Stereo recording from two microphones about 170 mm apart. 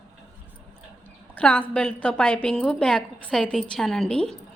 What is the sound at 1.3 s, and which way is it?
A woman's voice, 10° left (ahead or behind).